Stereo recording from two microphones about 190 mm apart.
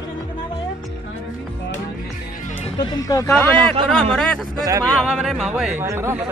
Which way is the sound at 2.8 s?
20° left (ahead or behind).